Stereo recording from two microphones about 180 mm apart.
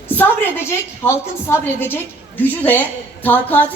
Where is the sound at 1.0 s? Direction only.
15° left (ahead or behind).